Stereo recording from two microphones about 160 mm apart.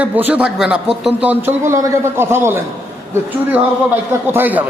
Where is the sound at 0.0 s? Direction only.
10° right (ahead or behind).